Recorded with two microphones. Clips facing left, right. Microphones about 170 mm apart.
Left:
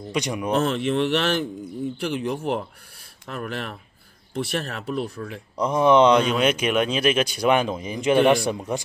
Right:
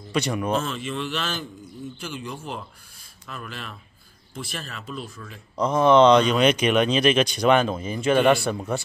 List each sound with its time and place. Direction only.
0.1 s speech: 15° left (ahead or behind)
0.6 s speech: 65° left (ahead or behind)
5.6 s speech: 15° left (ahead or behind)